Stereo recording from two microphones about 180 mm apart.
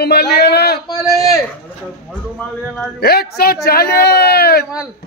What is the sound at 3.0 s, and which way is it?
A man's voice, 60° left (ahead or behind).